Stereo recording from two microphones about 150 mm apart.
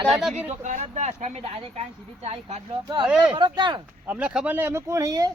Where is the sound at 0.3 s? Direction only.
50° right (ahead or behind).